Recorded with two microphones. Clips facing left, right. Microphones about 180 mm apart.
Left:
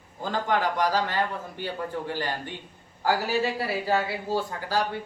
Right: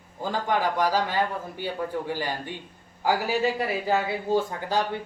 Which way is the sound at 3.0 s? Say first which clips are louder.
Right 1 dB; 20° right (ahead or behind).